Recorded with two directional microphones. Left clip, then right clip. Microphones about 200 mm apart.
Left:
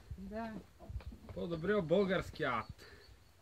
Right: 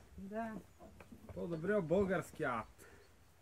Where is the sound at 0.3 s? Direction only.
25° right (ahead or behind).